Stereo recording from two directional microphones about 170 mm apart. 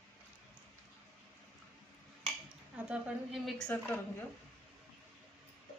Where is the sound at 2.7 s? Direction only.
5° right (ahead or behind).